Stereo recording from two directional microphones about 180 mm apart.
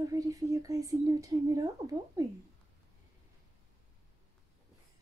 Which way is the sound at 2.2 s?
20° right (ahead or behind).